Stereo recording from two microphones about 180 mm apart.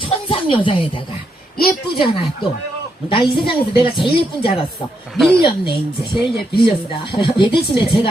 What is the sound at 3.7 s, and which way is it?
Speech, 30° left (ahead or behind).